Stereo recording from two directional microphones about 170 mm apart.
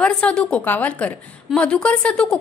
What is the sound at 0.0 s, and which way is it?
A woman's voice, 5° left (ahead or behind).